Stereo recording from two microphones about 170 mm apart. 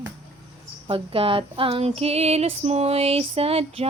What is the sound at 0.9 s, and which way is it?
Female singing, 30° right (ahead or behind).